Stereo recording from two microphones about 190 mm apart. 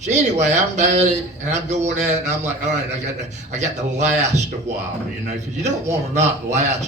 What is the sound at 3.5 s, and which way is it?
Speech, 35° right (ahead or behind).